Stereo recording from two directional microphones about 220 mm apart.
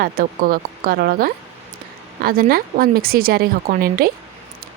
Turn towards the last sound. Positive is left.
turn(degrees=-40)  # may be behind; listen again after turning